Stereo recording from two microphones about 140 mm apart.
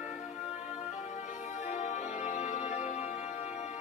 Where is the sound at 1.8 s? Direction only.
60° left (ahead or behind).